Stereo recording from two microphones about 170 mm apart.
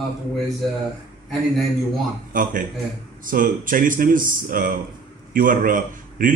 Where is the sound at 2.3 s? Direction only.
50° right (ahead or behind).